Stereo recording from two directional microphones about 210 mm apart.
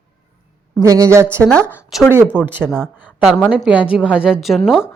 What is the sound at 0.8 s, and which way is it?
A woman's voice, 15° right (ahead or behind).